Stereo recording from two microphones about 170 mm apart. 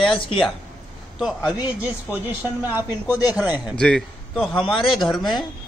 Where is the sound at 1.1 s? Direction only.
Centre (ahead or behind).